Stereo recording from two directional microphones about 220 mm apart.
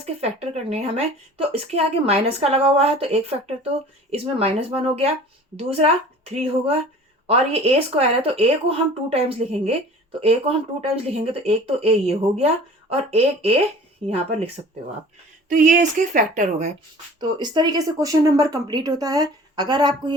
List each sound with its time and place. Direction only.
0.0 s a woman's voice: 30° right (ahead or behind)
17.2 s speech: 20° right (ahead or behind)